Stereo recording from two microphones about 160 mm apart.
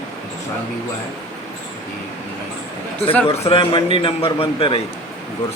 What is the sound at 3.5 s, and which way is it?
A man's voice, 35° left (ahead or behind).